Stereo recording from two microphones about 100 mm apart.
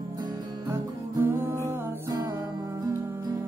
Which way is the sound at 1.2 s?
25° right (ahead or behind).